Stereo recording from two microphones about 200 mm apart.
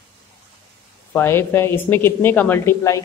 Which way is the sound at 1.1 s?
10° left (ahead or behind).